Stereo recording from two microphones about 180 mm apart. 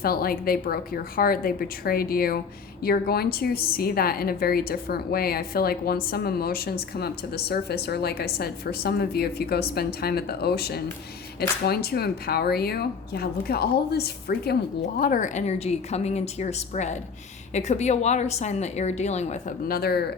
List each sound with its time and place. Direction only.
0.0 s a woman's voice: 55° left (ahead or behind)